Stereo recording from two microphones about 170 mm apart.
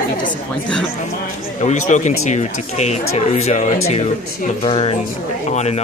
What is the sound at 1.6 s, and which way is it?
Speech, 45° left (ahead or behind).